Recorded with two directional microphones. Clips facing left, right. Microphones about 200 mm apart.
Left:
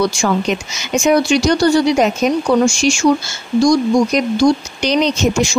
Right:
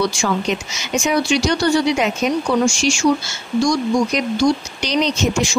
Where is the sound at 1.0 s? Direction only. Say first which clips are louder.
Left 5 dB; 45° left (ahead or behind).